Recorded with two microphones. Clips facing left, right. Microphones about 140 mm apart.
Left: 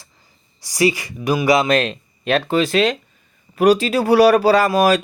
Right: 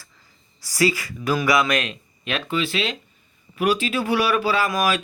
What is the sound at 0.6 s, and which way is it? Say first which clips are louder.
Speech: left 4 dB; 20° left (ahead or behind).